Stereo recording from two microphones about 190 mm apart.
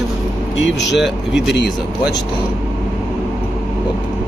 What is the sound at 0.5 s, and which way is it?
Speech, 70° left (ahead or behind).